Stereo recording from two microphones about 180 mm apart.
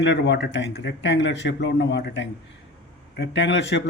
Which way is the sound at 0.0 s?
80° left.